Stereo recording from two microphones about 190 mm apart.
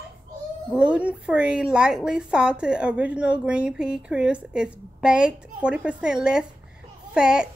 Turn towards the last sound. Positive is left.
turn(degrees=-5)  # may be behind; listen again after turning